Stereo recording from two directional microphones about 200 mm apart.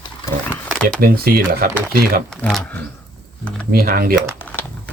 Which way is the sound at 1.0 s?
50° right (ahead or behind).